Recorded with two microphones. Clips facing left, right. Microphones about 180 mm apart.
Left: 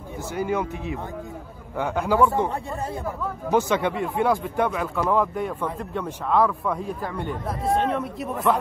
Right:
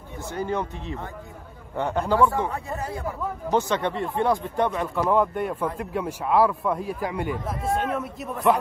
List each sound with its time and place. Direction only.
0.3 s speech: 10° left (ahead or behind)
2.1 s speech: 20° left (ahead or behind)
3.4 s speech: 10° left (ahead or behind)